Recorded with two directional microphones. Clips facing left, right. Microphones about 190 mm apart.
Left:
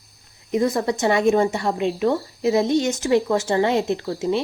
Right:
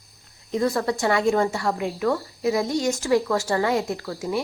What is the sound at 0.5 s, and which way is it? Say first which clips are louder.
A woman's voice: left 2 dB; 20° left (ahead or behind).